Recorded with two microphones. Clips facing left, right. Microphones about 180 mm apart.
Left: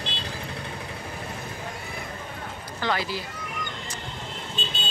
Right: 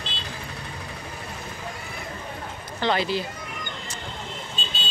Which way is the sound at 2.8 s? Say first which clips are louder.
Right 4 dB; 25° right (ahead or behind).